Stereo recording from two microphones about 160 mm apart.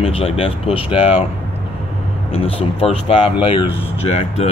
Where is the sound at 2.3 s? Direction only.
40° left (ahead or behind).